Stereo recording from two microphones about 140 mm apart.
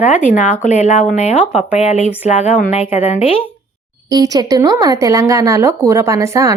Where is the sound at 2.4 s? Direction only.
65° left (ahead or behind).